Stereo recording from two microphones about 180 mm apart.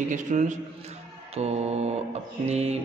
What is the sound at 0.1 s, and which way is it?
A man's voice, 45° right (ahead or behind).